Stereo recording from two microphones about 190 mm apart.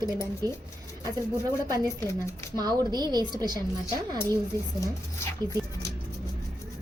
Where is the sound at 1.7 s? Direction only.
20° right (ahead or behind).